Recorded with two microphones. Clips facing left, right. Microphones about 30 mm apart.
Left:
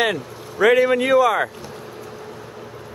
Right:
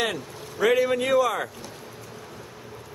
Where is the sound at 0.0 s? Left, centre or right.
Centre.